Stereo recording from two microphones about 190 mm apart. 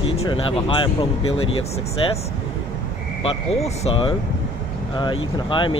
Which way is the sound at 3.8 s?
30° left (ahead or behind).